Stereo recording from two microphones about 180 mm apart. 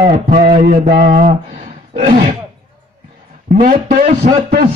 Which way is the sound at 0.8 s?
55° right (ahead or behind).